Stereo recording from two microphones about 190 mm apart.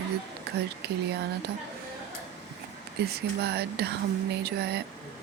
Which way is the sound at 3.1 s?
60° right (ahead or behind).